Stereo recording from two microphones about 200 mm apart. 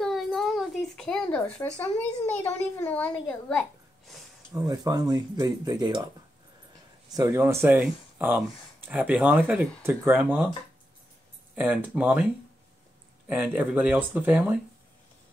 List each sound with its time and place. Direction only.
0.0 s a sound: centre (ahead or behind)
1.8 s a child's voice: 10° left (ahead or behind)
4.6 s speech: 20° right (ahead or behind)
7.1 s speech: 15° right (ahead or behind)
11.5 s speech: 5° right (ahead or behind)
13.3 s speech: 5° right (ahead or behind)